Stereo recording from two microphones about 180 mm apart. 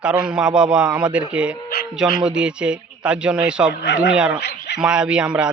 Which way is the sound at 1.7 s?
60° left (ahead or behind).